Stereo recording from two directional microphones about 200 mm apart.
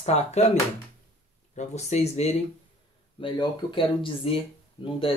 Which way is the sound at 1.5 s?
35° left (ahead or behind).